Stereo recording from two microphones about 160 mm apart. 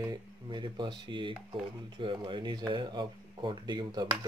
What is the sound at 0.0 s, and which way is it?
Speech, 25° right (ahead or behind).